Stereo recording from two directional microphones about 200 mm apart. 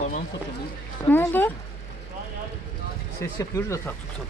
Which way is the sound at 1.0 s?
10° left (ahead or behind).